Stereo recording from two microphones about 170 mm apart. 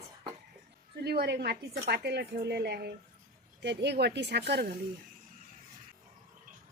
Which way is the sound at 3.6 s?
85° right.